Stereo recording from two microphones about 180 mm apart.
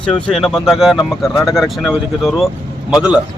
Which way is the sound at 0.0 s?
5° left (ahead or behind).